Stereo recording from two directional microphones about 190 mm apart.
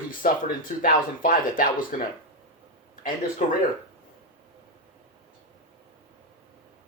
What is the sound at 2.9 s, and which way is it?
Speech, 45° left (ahead or behind).